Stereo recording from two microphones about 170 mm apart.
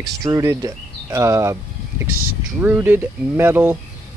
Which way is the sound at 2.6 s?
10° right (ahead or behind).